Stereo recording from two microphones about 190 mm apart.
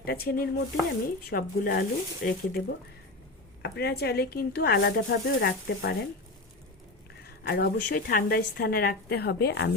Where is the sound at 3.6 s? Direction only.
60° left (ahead or behind).